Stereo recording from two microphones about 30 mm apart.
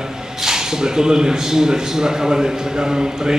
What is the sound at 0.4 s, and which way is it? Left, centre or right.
Speech, centre.